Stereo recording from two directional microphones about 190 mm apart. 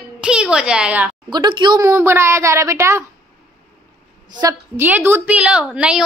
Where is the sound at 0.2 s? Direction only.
5° right (ahead or behind).